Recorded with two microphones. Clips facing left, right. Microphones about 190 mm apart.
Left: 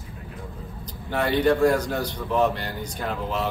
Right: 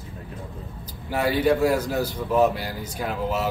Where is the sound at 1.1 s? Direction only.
5° right (ahead or behind).